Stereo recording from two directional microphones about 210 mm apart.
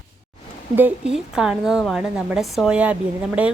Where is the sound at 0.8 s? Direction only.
5° right (ahead or behind).